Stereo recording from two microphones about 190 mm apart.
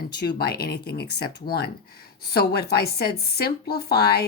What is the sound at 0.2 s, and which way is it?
Speech, 60° left (ahead or behind).